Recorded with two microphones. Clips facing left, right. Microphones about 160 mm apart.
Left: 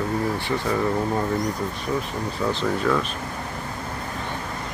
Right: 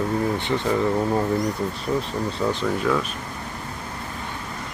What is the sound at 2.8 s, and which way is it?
Speech, 5° right (ahead or behind).